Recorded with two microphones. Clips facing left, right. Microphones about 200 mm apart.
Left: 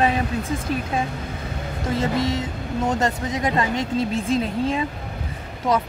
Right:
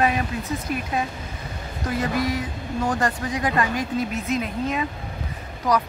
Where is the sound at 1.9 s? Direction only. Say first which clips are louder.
Left 2 dB; 25° left (ahead or behind).